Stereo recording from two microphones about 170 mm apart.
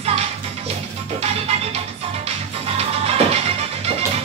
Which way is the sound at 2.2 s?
35° right (ahead or behind).